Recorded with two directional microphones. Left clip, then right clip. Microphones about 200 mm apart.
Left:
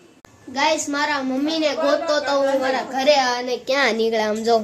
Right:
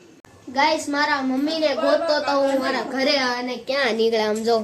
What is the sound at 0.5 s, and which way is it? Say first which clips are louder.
A child's voice: even; 5° right (ahead or behind).